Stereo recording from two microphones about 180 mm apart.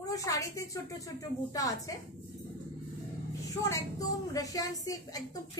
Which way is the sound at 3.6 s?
20° left (ahead or behind).